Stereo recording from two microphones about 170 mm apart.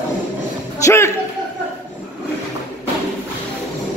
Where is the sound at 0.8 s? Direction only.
15° left (ahead or behind).